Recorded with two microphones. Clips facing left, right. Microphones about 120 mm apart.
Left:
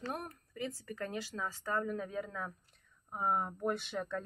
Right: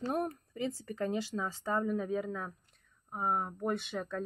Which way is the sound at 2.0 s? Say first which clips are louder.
Right 5 dB; 10° right (ahead or behind).